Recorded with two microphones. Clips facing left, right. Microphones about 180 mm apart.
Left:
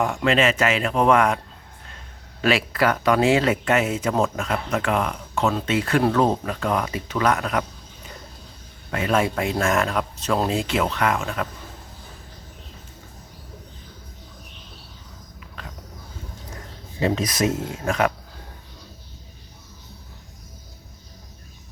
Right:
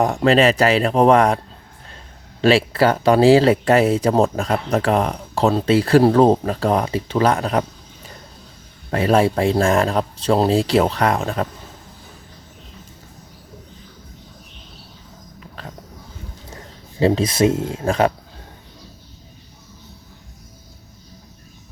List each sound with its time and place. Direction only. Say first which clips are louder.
0.0 s speech: right 5 dB; 35° right (ahead or behind)
2.4 s speech: right 6 dB; 30° right (ahead or behind)
8.9 s speech: right 6 dB; 35° right (ahead or behind)
15.6 s a sound: right 4 dB; 35° right (ahead or behind)
17.0 s speech: right 6 dB; 30° right (ahead or behind)